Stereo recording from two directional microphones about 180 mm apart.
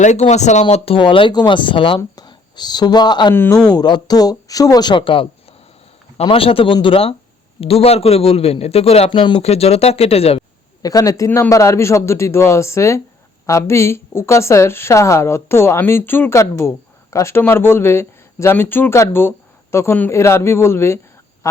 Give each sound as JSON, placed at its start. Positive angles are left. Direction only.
{"t": 0.0, "sound": "speech", "side_deg": 40}
{"t": 3.3, "sound": "a woman's voice", "side_deg": 10}
{"t": 3.7, "sound": "a man's voice", "side_deg": 25}
{"t": 10.8, "sound": "a woman's voice", "side_deg": 20}